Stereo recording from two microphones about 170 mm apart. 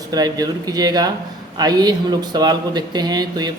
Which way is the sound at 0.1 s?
20° right (ahead or behind).